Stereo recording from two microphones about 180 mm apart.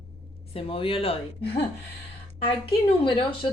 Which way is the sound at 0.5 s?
30° left (ahead or behind).